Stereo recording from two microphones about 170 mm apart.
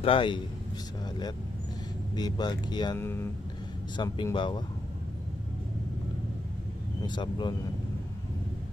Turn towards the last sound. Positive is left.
turn(degrees=25)  # may be behind; listen again after turning